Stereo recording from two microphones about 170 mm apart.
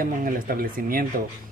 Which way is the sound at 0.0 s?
55° right (ahead or behind).